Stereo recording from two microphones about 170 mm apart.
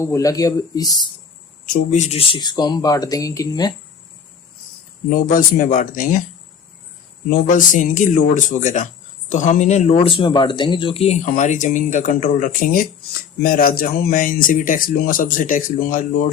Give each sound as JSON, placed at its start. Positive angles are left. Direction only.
{"t": 0.0, "sound": "speech", "side_deg": 20}
{"t": 1.6, "sound": "speech", "side_deg": 50}
{"t": 5.1, "sound": "speech", "side_deg": 55}
{"t": 7.3, "sound": "speech", "side_deg": 50}